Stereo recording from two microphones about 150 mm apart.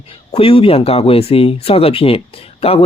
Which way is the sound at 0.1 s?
40° left (ahead or behind).